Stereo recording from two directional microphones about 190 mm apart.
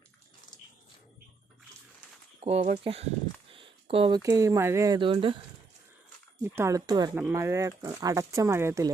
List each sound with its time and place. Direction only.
2.4 s speech: 35° right (ahead or behind)
3.5 s a sound: 30° right (ahead or behind)
4.2 s speech: 15° right (ahead or behind)
6.4 s speech: 15° right (ahead or behind)